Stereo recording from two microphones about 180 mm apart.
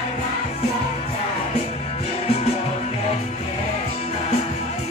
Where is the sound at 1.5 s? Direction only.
35° left (ahead or behind).